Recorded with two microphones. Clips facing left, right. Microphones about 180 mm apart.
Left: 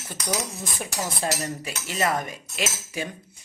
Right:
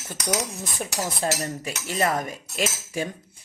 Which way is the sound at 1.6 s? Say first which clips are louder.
Right 1 dB; 40° right (ahead or behind).